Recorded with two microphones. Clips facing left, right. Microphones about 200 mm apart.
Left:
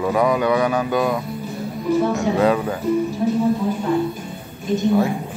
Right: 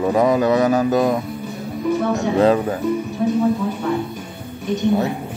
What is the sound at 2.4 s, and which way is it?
Speech, 30° right (ahead or behind).